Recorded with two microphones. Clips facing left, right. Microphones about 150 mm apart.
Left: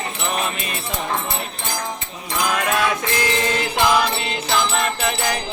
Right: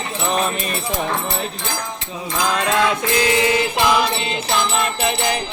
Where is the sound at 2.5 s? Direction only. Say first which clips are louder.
Right 2 dB; 25° right (ahead or behind).